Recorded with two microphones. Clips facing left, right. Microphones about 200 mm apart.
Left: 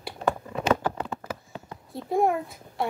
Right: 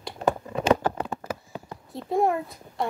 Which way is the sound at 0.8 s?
35° right (ahead or behind).